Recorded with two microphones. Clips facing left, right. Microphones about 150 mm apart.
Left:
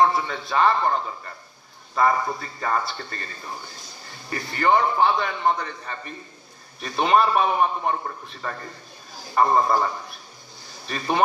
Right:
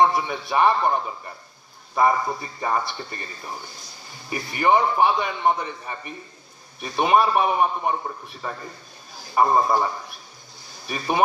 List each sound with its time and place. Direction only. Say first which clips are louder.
0.0 s a man's voice: right 1 dB; 15° right (ahead or behind)
10.9 s a man's voice: right 1 dB; 10° right (ahead or behind)